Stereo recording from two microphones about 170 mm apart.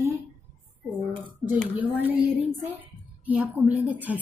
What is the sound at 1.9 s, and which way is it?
A woman's voice, 10° right (ahead or behind).